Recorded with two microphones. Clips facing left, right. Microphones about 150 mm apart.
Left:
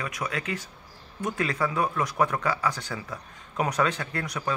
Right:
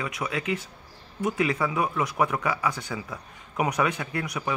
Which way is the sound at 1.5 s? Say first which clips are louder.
Even; 10° right (ahead or behind).